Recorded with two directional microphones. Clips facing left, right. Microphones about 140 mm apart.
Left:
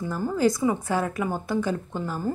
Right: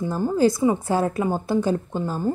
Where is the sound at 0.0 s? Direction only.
25° right (ahead or behind).